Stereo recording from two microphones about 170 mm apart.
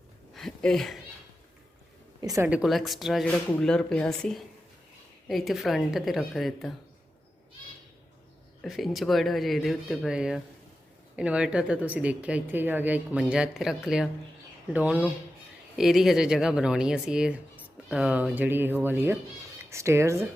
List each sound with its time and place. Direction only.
0.3 s a sound: centre (ahead or behind)
2.2 s a woman's voice: 20° right (ahead or behind)
2.5 s speech: centre (ahead or behind)
8.6 s speech: centre (ahead or behind); by 20.2 s 15° right (ahead or behind)